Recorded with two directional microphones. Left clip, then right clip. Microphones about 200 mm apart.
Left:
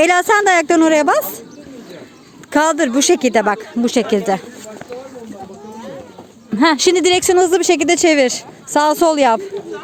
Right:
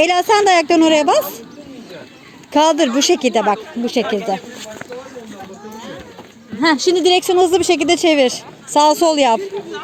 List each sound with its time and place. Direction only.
0.1 s speech: 20° left (ahead or behind)
2.5 s speech: 20° left (ahead or behind)
6.6 s speech: 40° left (ahead or behind); by 9.4 s 15° left (ahead or behind)